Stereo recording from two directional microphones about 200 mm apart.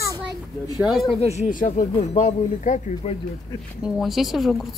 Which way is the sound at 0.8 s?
Centre (ahead or behind).